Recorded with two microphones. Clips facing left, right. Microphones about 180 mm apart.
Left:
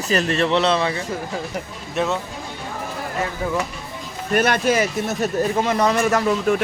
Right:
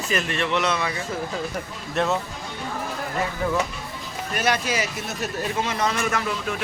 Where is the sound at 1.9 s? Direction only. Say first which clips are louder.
Left 1 dB; centre (ahead or behind).